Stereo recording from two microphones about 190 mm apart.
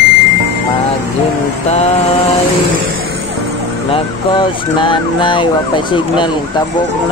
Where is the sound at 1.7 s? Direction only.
35° left (ahead or behind).